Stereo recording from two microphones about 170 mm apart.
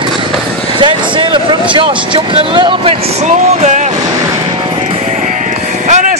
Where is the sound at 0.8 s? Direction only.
30° right (ahead or behind).